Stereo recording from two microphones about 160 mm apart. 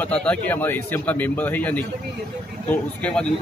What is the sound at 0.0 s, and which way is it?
A man's voice, 10° left (ahead or behind).